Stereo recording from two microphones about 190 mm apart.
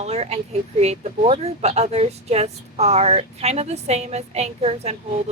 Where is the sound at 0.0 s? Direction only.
35° right (ahead or behind).